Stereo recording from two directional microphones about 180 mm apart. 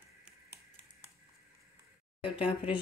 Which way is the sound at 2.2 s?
30° left (ahead or behind).